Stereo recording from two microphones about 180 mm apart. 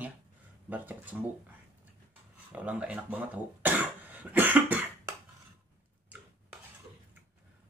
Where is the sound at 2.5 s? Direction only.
10° right (ahead or behind).